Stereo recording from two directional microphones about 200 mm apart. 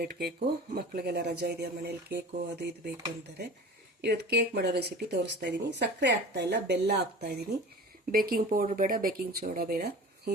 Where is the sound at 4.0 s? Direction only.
55° right (ahead or behind).